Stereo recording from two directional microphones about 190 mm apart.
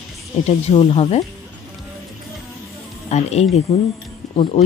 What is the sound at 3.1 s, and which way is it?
Speech, 35° left (ahead or behind).